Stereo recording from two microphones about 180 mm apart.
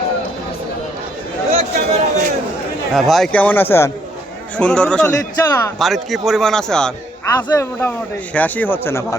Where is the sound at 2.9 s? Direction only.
Centre (ahead or behind).